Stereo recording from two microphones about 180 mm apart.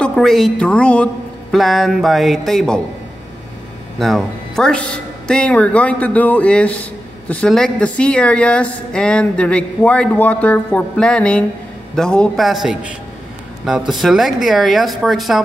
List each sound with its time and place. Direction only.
0.0 s speech: centre (ahead or behind)
4.0 s a man's voice: centre (ahead or behind)